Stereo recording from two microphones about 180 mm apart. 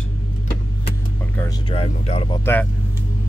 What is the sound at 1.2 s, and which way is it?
Music, 10° left (ahead or behind).